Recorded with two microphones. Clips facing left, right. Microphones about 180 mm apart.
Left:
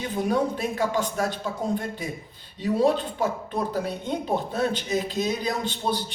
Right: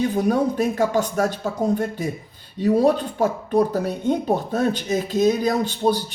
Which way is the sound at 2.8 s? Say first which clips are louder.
Right 4 dB; 45° right (ahead or behind).